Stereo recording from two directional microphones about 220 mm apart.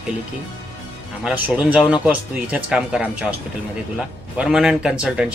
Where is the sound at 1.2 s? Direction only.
5° right (ahead or behind).